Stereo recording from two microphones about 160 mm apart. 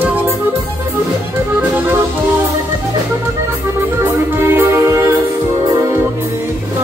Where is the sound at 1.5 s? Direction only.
10° right (ahead or behind).